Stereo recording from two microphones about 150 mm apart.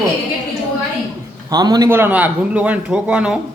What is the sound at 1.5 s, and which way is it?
Speech, 25° right (ahead or behind).